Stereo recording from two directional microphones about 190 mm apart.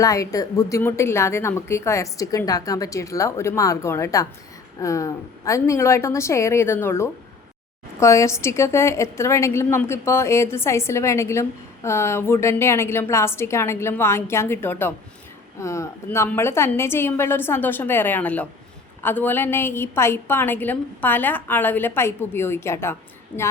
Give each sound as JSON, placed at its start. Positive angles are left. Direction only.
{"t": 0.0, "sound": "a woman's voice", "side_deg": 15}